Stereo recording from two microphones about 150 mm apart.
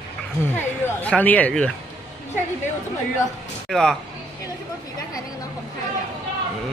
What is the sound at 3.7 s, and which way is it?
Speech, centre (ahead or behind).